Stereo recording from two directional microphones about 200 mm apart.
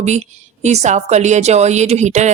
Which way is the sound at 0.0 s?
35° right (ahead or behind).